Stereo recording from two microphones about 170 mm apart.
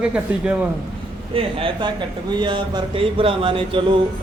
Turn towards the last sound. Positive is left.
turn(degrees=-30)  # may be behind; listen again after turning